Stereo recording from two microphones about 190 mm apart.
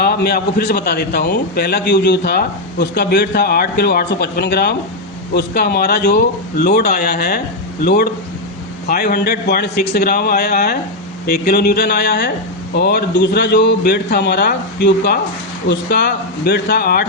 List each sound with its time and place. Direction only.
0.0 s a man's voice: 55° left (ahead or behind)